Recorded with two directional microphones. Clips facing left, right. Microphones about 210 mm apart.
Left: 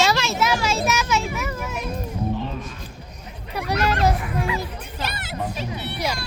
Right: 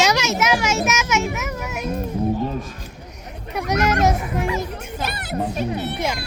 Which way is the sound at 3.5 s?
15° right (ahead or behind).